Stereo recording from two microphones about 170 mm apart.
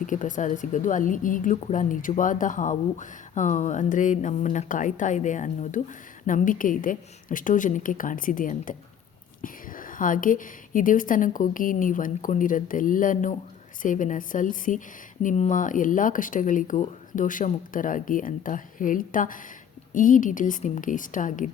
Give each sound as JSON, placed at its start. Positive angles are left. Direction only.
{"t": 0.0, "sound": "speech", "side_deg": 50}